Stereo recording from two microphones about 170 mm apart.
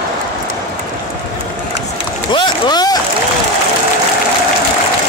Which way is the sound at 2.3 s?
25° left (ahead or behind).